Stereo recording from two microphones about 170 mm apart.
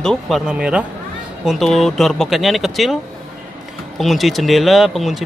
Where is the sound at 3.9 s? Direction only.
Centre (ahead or behind).